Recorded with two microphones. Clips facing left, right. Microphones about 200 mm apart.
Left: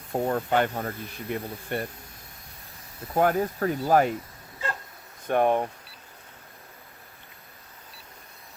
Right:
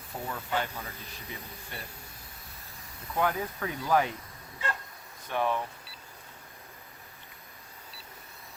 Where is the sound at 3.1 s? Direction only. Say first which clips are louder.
Left 7 dB; 45° left (ahead or behind).